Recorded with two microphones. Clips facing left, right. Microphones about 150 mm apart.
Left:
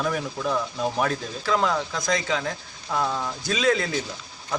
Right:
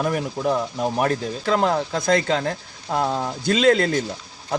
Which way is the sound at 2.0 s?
55° right (ahead or behind).